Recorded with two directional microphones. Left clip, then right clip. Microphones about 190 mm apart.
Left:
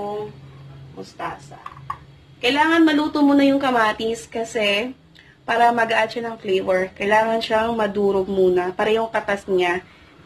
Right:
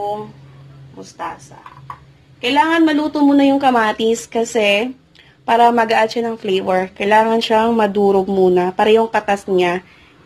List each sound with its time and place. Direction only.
2.5 s a woman's voice: 30° right (ahead or behind)
3.8 s a woman's voice: 40° right (ahead or behind)